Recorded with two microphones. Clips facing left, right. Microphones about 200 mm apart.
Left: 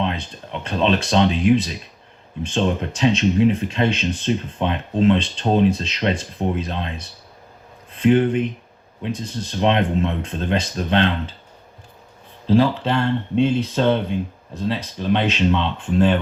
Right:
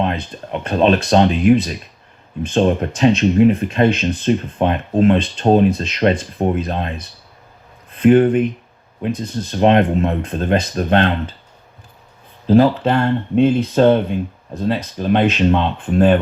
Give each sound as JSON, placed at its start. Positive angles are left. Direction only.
{"t": 0.0, "sound": "speech", "side_deg": -55}
{"t": 12.5, "sound": "speech", "side_deg": -55}